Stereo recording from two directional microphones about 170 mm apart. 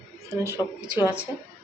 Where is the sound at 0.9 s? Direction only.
10° right (ahead or behind).